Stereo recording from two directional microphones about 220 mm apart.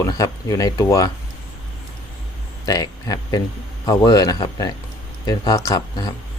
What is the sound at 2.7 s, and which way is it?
Speech, 15° left (ahead or behind).